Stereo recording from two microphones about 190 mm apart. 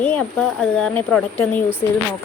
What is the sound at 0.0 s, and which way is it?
Speech, 5° left (ahead or behind).